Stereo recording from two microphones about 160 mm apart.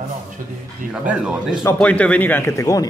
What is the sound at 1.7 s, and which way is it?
A man's voice, 10° left (ahead or behind).